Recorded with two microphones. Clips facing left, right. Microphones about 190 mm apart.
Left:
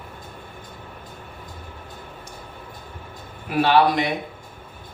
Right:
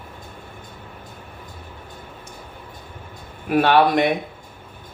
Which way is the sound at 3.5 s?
55° right (ahead or behind).